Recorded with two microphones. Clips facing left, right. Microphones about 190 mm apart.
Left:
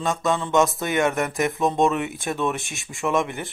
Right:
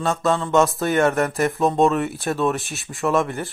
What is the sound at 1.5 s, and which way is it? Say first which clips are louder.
Speech: right 3 dB; centre (ahead or behind).